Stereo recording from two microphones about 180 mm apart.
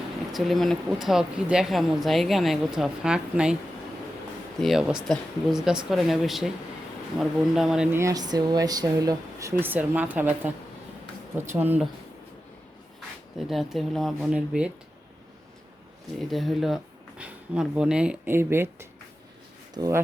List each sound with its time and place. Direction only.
0.3 s speech: centre (ahead or behind)
4.6 s speech: 5° right (ahead or behind)
7.9 s speech: 20° right (ahead or behind)
13.5 s speech: centre (ahead or behind)
16.3 s speech: centre (ahead or behind); by 20.0 s 20° right (ahead or behind)